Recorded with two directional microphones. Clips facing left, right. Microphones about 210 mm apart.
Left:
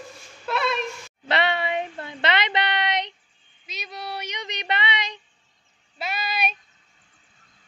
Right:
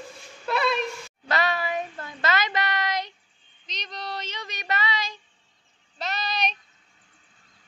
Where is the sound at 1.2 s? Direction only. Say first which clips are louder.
Left 2 dB; 25° left (ahead or behind).